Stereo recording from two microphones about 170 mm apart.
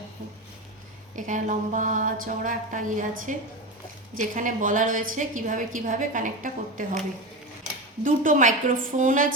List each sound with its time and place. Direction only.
1.1 s a woman's voice: 50° right (ahead or behind)
8.0 s a woman's voice: 50° right (ahead or behind)